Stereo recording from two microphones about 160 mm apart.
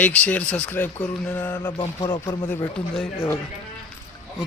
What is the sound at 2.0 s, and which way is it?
Speech, 25° left (ahead or behind).